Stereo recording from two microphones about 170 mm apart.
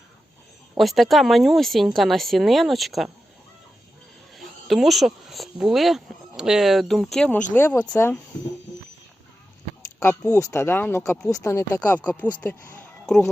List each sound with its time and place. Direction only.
0.8 s speech: centre (ahead or behind)
4.4 s speech: centre (ahead or behind)
10.0 s speech: 15° left (ahead or behind)